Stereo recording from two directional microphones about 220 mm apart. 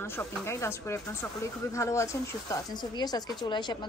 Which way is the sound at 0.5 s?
10° left (ahead or behind).